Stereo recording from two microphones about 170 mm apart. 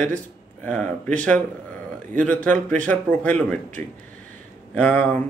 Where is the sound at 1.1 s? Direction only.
10° left (ahead or behind).